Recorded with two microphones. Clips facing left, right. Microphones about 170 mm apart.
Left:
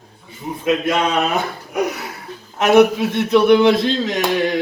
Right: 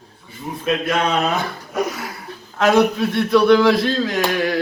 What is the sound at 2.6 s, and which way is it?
A man's voice, 20° left (ahead or behind).